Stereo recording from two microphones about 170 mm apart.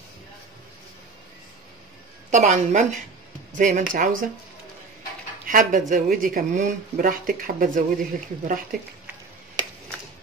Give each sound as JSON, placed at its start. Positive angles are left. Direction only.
{"t": 2.3, "sound": "speech", "side_deg": -45}
{"t": 5.5, "sound": "speech", "side_deg": -50}